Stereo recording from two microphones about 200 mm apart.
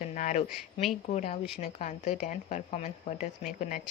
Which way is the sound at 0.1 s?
40° left (ahead or behind).